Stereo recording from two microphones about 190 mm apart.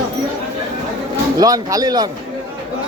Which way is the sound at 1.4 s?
20° right (ahead or behind).